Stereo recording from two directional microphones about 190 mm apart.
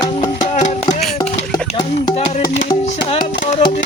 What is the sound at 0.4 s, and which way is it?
Music, 40° left (ahead or behind).